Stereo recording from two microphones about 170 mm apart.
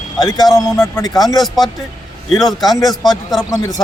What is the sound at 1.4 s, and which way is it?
Speech, centre (ahead or behind).